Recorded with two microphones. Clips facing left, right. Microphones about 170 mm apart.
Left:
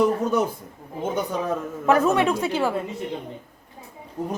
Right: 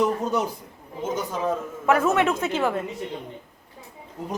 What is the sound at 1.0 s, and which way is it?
Speech, 60° left (ahead or behind).